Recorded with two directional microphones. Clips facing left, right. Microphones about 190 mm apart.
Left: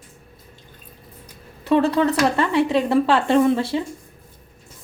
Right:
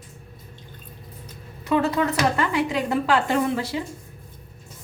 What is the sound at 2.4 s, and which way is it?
Speech, 30° left (ahead or behind).